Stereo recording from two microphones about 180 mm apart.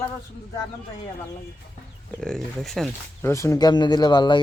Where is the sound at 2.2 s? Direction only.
5° left (ahead or behind).